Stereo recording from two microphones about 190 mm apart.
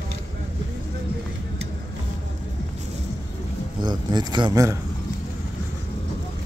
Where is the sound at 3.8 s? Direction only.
20° right (ahead or behind).